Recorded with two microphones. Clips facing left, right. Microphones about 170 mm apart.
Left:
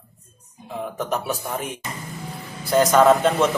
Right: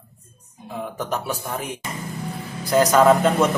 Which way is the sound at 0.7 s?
Centre (ahead or behind).